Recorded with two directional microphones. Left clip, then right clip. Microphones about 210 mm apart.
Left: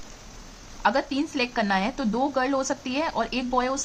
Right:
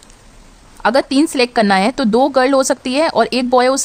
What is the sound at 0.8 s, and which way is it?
A woman's voice, 50° right (ahead or behind).